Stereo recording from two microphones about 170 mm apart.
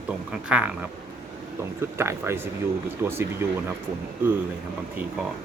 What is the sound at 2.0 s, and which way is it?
Speech, 15° right (ahead or behind).